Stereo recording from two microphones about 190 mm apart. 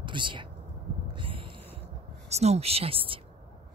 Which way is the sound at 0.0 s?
25° right (ahead or behind).